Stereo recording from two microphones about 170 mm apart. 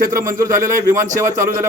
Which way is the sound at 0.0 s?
55° right (ahead or behind).